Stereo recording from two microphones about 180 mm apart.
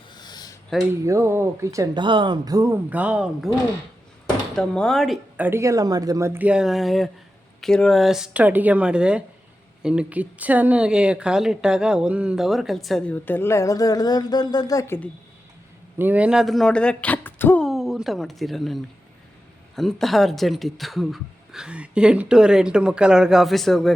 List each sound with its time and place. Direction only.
0.1 s a sound: 25° left (ahead or behind)
0.7 s speech: centre (ahead or behind)
1.0 s speech: 15° right (ahead or behind)
4.5 s speech: 5° left (ahead or behind)
5.5 s speech: 15° right (ahead or behind); by 15.1 s 10° left (ahead or behind)
16.0 s speech: 10° right (ahead or behind)